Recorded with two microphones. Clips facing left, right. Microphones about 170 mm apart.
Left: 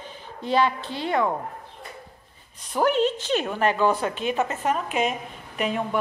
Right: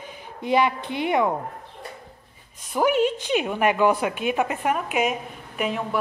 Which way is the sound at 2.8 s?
10° right (ahead or behind).